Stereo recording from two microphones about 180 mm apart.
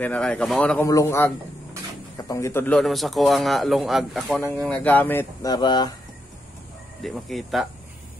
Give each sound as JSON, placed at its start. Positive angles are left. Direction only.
{"t": 0.0, "sound": "a man's voice", "side_deg": 5}
{"t": 0.8, "sound": "a man's voice", "side_deg": 15}
{"t": 5.5, "sound": "speech", "side_deg": 25}
{"t": 7.0, "sound": "a man's voice", "side_deg": 0}